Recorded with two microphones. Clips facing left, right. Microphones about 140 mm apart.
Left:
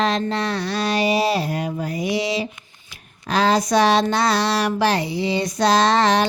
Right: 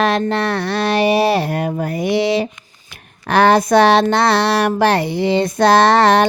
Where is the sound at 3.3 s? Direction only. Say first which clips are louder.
Right 6 dB; 60° right (ahead or behind).